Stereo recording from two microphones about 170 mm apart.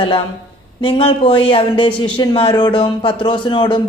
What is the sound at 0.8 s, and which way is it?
Speech, 30° left (ahead or behind).